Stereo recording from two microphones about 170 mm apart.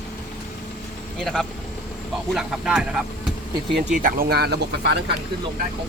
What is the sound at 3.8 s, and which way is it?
Speech, 50° right (ahead or behind).